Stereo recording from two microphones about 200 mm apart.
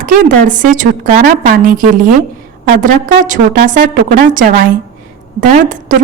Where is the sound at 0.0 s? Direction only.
40° right (ahead or behind).